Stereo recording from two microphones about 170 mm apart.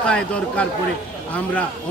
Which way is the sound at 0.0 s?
5° left (ahead or behind).